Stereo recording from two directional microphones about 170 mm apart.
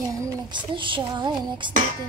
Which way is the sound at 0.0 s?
20° right (ahead or behind).